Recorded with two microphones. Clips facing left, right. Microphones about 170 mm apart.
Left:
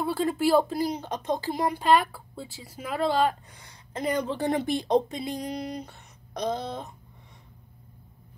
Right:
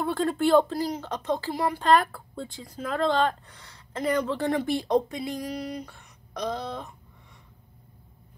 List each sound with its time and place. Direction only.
0.0 s speech: 5° left (ahead or behind)
1.9 s speech: 5° left (ahead or behind); by 6.4 s 20° left (ahead or behind)